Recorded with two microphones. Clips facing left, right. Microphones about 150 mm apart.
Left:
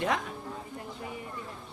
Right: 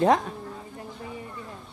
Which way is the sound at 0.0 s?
35° right (ahead or behind).